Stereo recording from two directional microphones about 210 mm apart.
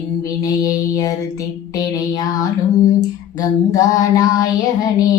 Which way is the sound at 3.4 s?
15° left (ahead or behind).